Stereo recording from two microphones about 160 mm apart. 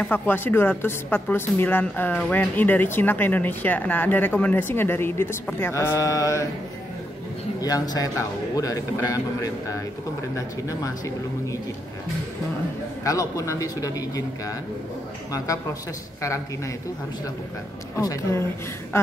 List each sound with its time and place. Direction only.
0.0 s a woman's voice: 10° left (ahead or behind)
7.6 s a man's voice: 25° left (ahead or behind)
9.1 s a man's voice: 20° left (ahead or behind)
13.0 s a man's voice: 20° left (ahead or behind)
15.3 s a man's voice: 20° left (ahead or behind)
17.9 s a man's voice: 20° left (ahead or behind)